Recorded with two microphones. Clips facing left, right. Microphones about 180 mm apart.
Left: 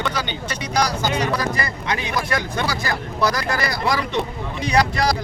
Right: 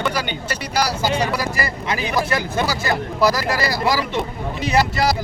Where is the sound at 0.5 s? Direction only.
10° right (ahead or behind).